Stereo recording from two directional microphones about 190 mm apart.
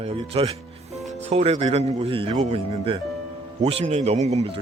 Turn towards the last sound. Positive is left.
turn(degrees=-35)  # may be behind; listen again after turning